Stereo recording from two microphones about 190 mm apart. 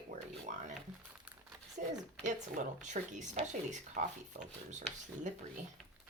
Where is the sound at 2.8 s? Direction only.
40° right (ahead or behind).